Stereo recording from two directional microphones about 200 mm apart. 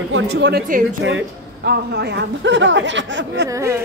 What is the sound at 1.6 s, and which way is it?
Speech, 55° right (ahead or behind).